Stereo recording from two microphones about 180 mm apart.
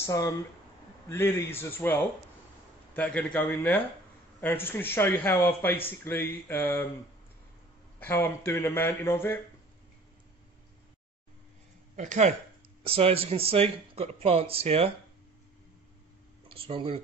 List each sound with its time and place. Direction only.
0.0 s a man's voice: 20° left (ahead or behind)
8.0 s a man's voice: 10° left (ahead or behind)
12.0 s speech: 40° right (ahead or behind)
16.4 s speech: 30° right (ahead or behind)